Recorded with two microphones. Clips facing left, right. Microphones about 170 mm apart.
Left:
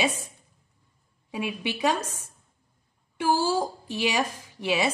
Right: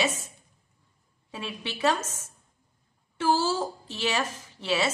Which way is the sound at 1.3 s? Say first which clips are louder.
Left 6 dB; 15° left (ahead or behind).